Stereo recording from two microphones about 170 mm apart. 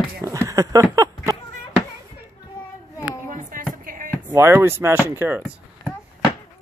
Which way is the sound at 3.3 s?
50° right (ahead or behind).